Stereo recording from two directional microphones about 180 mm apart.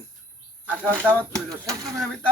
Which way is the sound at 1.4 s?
20° right (ahead or behind).